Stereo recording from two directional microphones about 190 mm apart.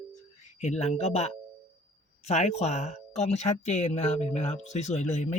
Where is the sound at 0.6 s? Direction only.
35° left (ahead or behind).